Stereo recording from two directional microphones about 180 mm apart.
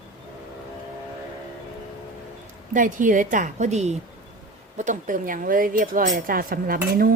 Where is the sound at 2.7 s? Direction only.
45° right (ahead or behind).